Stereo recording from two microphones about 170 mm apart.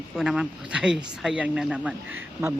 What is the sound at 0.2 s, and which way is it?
A woman's voice, 5° right (ahead or behind).